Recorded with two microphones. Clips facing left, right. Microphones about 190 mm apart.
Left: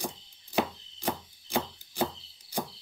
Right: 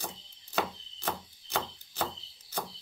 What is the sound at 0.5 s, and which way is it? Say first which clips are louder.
Chopping: left 3 dB; 15° left (ahead or behind).